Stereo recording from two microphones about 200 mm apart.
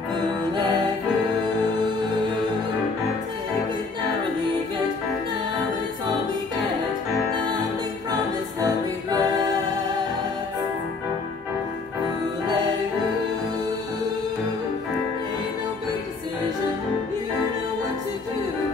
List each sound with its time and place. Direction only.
8.1 s music: 20° right (ahead or behind)